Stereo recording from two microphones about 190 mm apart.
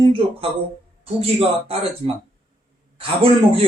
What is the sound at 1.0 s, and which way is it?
Speech, 30° right (ahead or behind).